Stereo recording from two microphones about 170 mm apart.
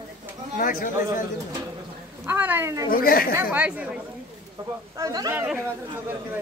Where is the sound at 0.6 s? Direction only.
55° left (ahead or behind).